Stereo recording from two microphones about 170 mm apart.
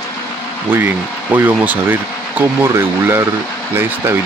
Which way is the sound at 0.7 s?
10° right (ahead or behind).